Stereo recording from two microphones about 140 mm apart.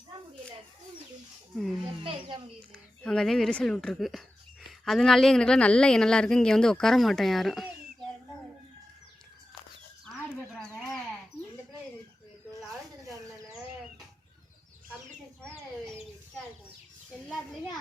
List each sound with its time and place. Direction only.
1.5 s speech: centre (ahead or behind)
1.8 s speech: 35° right (ahead or behind)
2.6 s speech: 5° left (ahead or behind)
15.4 s chicken: 5° left (ahead or behind)
17.1 s children playing: 5° left (ahead or behind)